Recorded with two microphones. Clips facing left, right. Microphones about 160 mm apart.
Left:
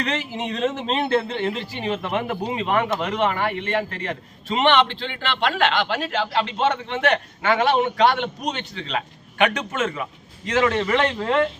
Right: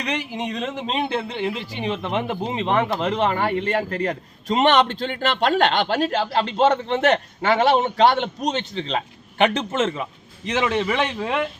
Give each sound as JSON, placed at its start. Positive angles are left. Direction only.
{"t": 0.0, "sound": "a man's voice", "side_deg": -15}